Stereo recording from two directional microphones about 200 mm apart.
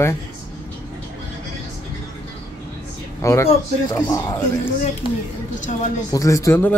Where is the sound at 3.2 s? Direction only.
15° left (ahead or behind).